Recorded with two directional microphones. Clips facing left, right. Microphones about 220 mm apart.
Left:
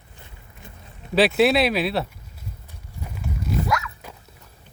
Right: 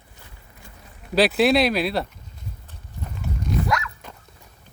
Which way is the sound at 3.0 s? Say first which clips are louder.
Even; 5° left (ahead or behind).